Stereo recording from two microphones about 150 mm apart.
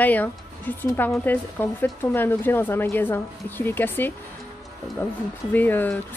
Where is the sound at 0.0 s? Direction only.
10° left (ahead or behind).